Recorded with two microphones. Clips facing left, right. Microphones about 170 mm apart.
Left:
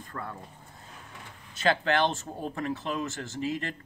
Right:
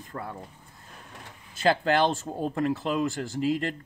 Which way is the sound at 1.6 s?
35° right (ahead or behind).